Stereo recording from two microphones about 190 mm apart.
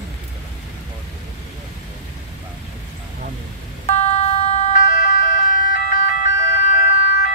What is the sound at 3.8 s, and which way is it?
Emergency vehicle, 35° left (ahead or behind).